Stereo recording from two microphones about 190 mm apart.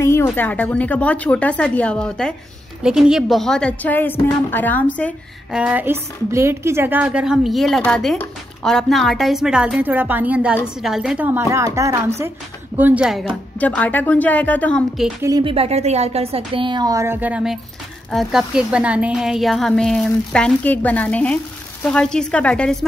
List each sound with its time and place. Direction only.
0.0 s a woman's voice: 15° left (ahead or behind)
5.5 s a woman's voice: 5° right (ahead or behind)
13.6 s speech: 10° left (ahead or behind)
15.2 s a woman's voice: 20° right (ahead or behind)
15.5 s a woman's voice: 35° right (ahead or behind); by 22.8 s 5° left (ahead or behind)